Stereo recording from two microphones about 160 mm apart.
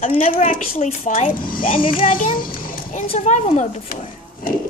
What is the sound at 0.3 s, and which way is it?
A child's voice, 50° left (ahead or behind).